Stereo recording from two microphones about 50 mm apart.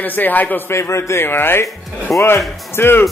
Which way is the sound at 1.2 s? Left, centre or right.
Left.